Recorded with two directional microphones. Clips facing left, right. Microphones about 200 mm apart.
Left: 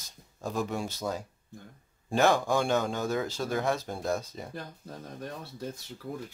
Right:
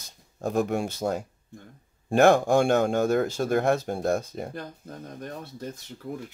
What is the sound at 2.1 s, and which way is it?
A man's voice, 55° right (ahead or behind).